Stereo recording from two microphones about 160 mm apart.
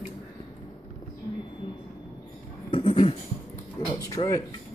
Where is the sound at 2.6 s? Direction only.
30° left (ahead or behind).